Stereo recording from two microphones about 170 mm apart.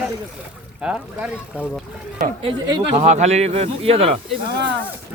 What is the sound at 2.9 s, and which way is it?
Speech, 45° right (ahead or behind).